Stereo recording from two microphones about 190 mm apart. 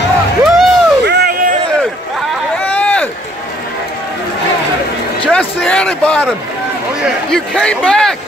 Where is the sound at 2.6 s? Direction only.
10° left (ahead or behind).